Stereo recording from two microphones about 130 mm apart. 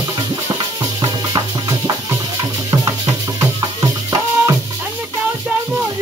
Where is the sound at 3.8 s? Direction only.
25° right (ahead or behind).